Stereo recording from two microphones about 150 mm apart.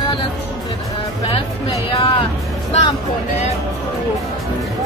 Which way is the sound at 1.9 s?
35° left (ahead or behind).